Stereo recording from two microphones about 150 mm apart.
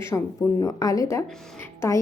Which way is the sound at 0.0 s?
20° left (ahead or behind).